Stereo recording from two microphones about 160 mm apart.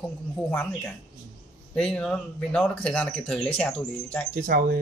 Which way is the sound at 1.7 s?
5° left (ahead or behind).